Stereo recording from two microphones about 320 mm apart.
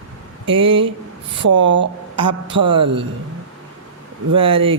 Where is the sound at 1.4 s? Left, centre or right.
Right.